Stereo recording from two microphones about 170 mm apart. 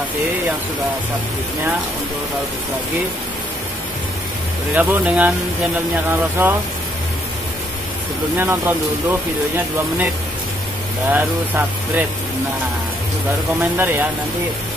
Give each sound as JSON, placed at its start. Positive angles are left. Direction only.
{"t": 4.7, "sound": "speech", "side_deg": -10}
{"t": 8.4, "sound": "speech", "side_deg": -10}
{"t": 11.1, "sound": "speech", "side_deg": -10}
{"t": 13.6, "sound": "speech", "side_deg": -10}